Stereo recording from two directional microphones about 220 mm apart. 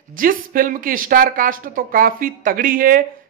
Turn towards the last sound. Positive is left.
turn(degrees=-40)  # may be behind; listen again after turning